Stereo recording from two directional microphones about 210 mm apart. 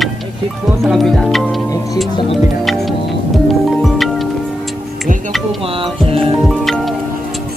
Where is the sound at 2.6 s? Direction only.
Centre (ahead or behind).